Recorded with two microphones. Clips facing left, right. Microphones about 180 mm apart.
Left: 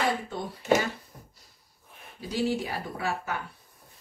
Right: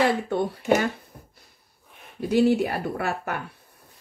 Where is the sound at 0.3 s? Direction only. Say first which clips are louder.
Right 4 dB; 60° right (ahead or behind).